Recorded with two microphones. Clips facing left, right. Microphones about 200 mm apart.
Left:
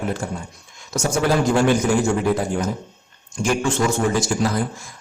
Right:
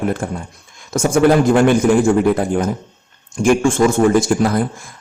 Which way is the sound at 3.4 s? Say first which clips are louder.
Right 7 dB; 50° right (ahead or behind).